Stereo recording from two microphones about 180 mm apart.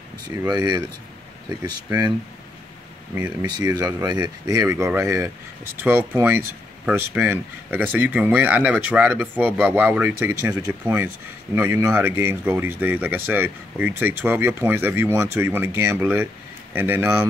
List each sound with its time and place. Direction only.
0.3 s speech: 20° right (ahead or behind)
3.4 s speech: 20° right (ahead or behind)